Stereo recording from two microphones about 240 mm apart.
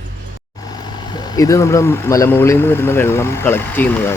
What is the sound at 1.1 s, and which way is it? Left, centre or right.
Speech, centre.